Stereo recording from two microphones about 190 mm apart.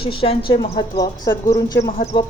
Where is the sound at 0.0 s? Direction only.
30° left (ahead or behind).